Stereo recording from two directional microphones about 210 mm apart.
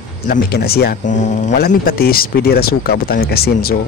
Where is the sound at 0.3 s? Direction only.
50° left (ahead or behind).